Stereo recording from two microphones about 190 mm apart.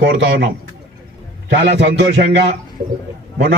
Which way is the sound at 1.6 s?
65° right (ahead or behind).